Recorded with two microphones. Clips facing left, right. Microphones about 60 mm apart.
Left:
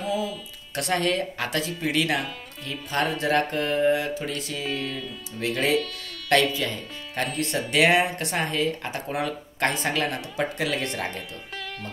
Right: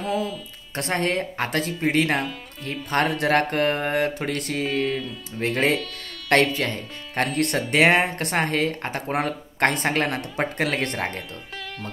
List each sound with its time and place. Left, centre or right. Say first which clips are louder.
0.7 s speech: even; right
7.7 s speech: right 1 dB; right